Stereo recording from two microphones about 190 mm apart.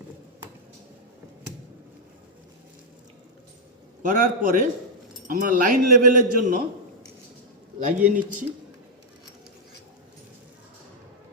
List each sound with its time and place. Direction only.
4.0 s speech: 45° right (ahead or behind)
7.8 s a man's voice: 40° right (ahead or behind)